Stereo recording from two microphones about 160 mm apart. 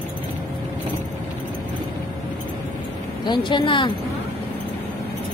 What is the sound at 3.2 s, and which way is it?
Speech, 30° left (ahead or behind).